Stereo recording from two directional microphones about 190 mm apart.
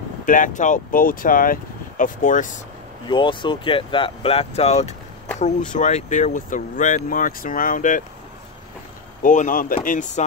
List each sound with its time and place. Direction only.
0.2 s speech: 45° left (ahead or behind)
3.1 s speech: 25° left (ahead or behind); by 8.0 s 45° left (ahead or behind)
9.2 s speech: 45° left (ahead or behind)